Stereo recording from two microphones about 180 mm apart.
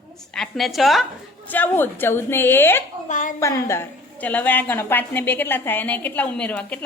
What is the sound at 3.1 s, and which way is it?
Speech, 45° left (ahead or behind).